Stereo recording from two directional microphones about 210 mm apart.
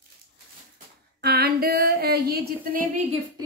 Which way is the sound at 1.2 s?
50° right (ahead or behind).